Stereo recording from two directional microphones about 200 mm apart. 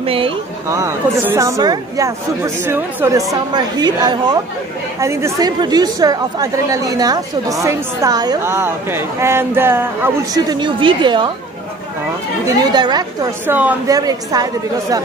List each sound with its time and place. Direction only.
0.0 s speech: 25° right (ahead or behind)
0.7 s speech: 15° right (ahead or behind)
12.4 s speech: 20° right (ahead or behind)